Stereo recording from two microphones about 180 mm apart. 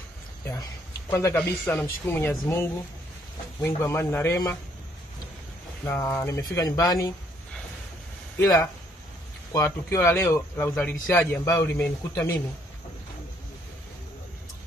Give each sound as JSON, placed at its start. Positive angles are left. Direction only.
{"t": 1.1, "sound": "speech", "side_deg": 15}
{"t": 5.9, "sound": "speech", "side_deg": 10}
{"t": 8.4, "sound": "speech", "side_deg": 20}
{"t": 9.8, "sound": "speech", "side_deg": 15}